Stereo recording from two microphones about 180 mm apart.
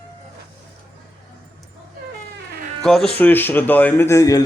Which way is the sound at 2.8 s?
Centre (ahead or behind).